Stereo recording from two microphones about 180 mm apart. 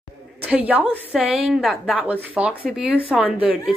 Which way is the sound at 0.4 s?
10° right (ahead or behind).